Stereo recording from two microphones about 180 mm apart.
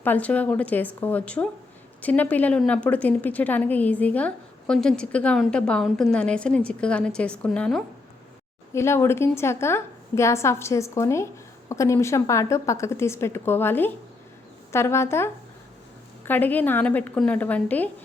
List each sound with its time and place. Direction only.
0.0 s a woman's voice: 10° left (ahead or behind)
8.7 s a woman's voice: 15° left (ahead or behind)